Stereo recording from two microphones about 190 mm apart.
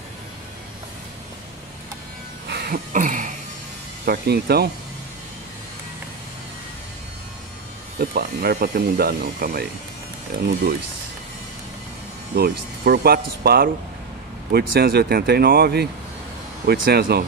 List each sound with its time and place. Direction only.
2.4 s a sound: 55° right (ahead or behind)
4.0 s speech: 55° right (ahead or behind)
8.0 s speech: 55° right (ahead or behind)
12.4 s speech: 55° right (ahead or behind)